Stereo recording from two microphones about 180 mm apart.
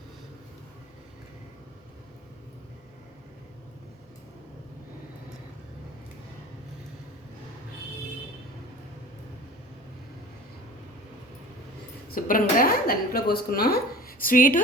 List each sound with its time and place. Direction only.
12.1 s a woman's voice: 50° left (ahead or behind)